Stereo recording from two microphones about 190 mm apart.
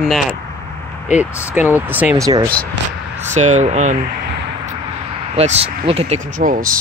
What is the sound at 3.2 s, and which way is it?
Speech, 40° right (ahead or behind).